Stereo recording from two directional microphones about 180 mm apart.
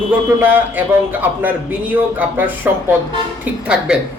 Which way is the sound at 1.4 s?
10° right (ahead or behind).